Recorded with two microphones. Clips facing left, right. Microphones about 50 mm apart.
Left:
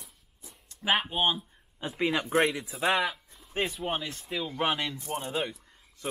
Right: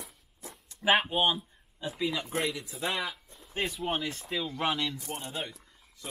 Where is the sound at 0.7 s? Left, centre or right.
Centre.